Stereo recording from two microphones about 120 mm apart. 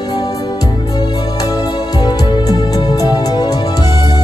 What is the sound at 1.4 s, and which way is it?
Music, 30° left (ahead or behind).